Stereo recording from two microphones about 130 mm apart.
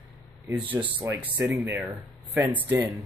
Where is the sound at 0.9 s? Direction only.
15° right (ahead or behind).